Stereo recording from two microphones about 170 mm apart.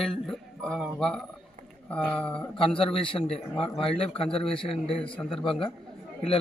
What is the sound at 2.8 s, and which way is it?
Speech, 30° left (ahead or behind).